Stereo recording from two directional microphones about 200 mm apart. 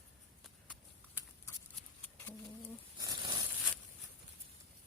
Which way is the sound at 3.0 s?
20° right (ahead or behind).